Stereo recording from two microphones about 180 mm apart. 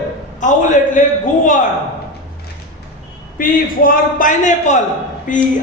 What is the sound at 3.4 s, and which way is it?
A woman's voice, 50° left (ahead or behind).